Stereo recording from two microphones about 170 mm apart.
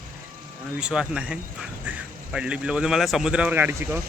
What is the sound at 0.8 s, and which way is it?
A man's voice, 5° right (ahead or behind).